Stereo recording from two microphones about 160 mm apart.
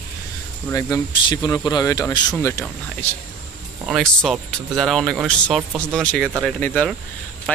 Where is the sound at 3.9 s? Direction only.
Centre (ahead or behind).